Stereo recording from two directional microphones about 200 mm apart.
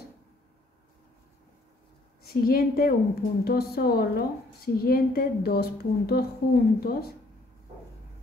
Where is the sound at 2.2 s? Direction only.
50° left (ahead or behind).